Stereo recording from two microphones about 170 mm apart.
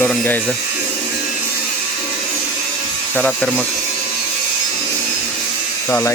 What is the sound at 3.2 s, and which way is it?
Speech, 5° left (ahead or behind).